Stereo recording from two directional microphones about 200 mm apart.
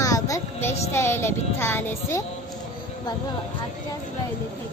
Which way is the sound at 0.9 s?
10° left (ahead or behind).